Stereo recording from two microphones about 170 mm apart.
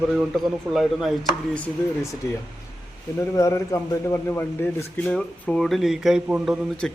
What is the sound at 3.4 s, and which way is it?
Speech, 15° left (ahead or behind).